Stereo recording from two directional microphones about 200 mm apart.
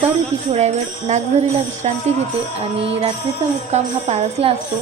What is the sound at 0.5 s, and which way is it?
Speech, 35° right (ahead or behind).